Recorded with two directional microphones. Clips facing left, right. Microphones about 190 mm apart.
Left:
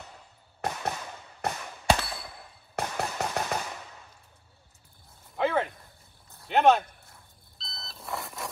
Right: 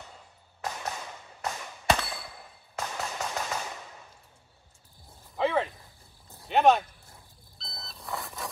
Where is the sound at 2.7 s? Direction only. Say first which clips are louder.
Left 3 dB; 65° left (ahead or behind).